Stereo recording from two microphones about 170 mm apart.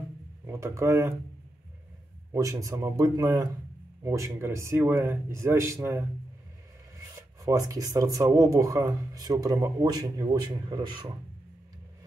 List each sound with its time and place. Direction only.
0.5 s speech: 15° right (ahead or behind)
2.3 s speech: 20° right (ahead or behind)
7.4 s speech: 20° right (ahead or behind)